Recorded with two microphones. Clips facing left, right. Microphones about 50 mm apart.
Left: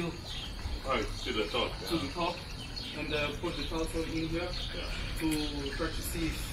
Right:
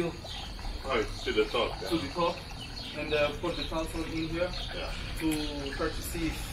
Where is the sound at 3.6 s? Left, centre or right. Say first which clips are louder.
Right 1 dB; right.